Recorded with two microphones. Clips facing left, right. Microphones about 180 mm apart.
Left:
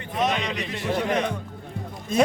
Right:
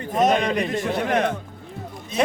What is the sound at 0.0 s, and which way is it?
A man's voice, 45° right (ahead or behind).